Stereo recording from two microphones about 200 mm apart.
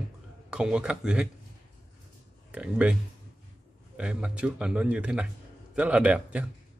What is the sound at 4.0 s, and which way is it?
A man's voice, 5° right (ahead or behind).